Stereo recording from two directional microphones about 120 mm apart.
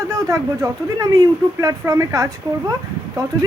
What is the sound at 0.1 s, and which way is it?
Speech, 25° right (ahead or behind).